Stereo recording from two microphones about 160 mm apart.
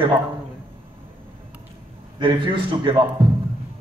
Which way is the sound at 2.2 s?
30° right (ahead or behind).